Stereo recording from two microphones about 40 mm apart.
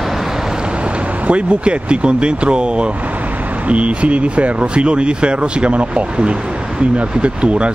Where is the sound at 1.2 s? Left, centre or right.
Right.